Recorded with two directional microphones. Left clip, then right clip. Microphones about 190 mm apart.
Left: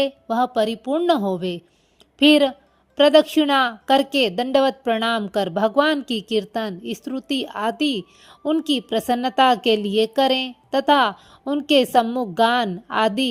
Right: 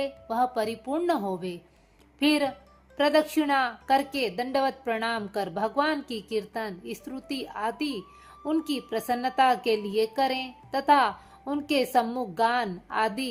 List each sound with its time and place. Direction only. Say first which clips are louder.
0.0 s a woman's voice: left 6 dB; 40° left (ahead or behind)